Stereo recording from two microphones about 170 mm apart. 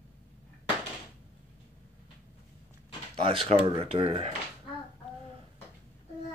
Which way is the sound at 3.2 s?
30° right (ahead or behind).